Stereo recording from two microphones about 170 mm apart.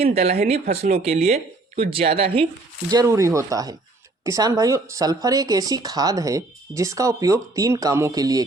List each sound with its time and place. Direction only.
0.0 s speech: 40° right (ahead or behind)
0.6 s speech: 65° right (ahead or behind)
0.9 s speech: 40° right (ahead or behind)
2.9 s speech: 20° right (ahead or behind)